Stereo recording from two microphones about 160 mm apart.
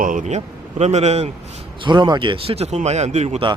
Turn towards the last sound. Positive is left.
turn(degrees=-40)  # may be behind; listen again after turning